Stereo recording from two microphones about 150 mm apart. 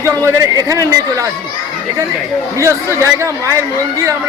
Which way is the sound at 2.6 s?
20° right (ahead or behind).